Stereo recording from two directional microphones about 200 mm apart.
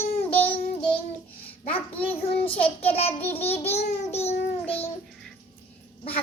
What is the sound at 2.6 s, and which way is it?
Babbling, 30° left (ahead or behind).